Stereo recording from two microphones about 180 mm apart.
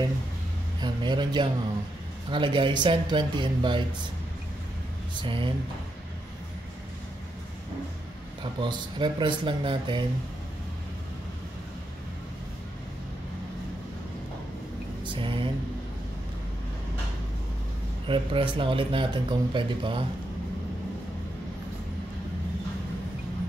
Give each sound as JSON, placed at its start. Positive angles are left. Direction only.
{"t": 0.7, "sound": "speech", "side_deg": -25}
{"t": 5.2, "sound": "speech", "side_deg": -30}
{"t": 8.4, "sound": "speech", "side_deg": -25}
{"t": 15.0, "sound": "a sound", "side_deg": -25}
{"t": 18.0, "sound": "speech", "side_deg": -30}